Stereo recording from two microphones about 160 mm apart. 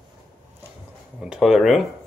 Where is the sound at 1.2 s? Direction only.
5° right (ahead or behind).